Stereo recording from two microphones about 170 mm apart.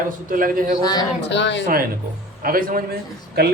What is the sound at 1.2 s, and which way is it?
Speech, 90° left.